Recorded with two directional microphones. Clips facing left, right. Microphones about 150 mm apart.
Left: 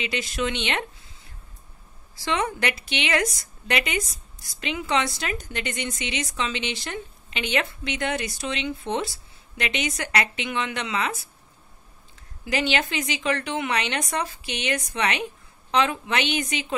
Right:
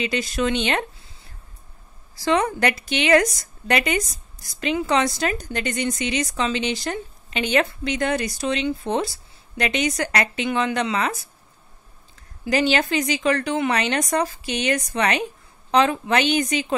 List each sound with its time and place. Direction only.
0.0 s a woman's voice: 40° right (ahead or behind)
2.2 s a woman's voice: 40° right (ahead or behind)
12.4 s a woman's voice: 40° right (ahead or behind)